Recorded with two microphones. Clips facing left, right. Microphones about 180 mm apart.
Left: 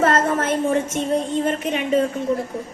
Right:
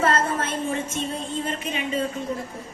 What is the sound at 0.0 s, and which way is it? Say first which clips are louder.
A woman's voice: left 4 dB; 45° left (ahead or behind).